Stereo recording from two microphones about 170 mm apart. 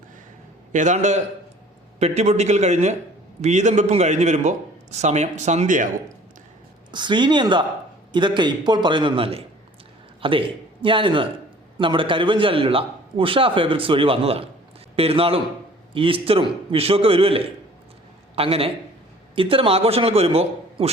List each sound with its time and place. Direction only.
0.7 s a man's voice: 45° right (ahead or behind)
6.9 s a man's voice: 25° right (ahead or behind)